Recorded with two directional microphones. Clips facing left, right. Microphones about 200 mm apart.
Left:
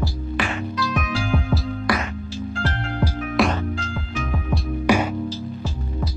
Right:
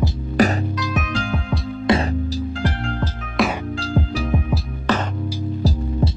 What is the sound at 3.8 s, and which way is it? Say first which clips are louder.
Music: right 6 dB; 35° right (ahead or behind).